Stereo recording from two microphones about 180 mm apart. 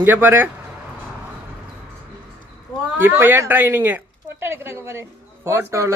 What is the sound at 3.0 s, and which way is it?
A woman's voice, 10° right (ahead or behind).